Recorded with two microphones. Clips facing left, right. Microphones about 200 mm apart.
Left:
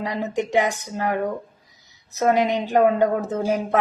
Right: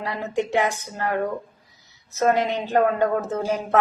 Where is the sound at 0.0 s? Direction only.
15° left (ahead or behind).